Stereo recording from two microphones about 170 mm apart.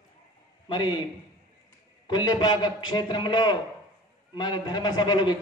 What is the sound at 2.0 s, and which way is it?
A man's voice, 25° left (ahead or behind).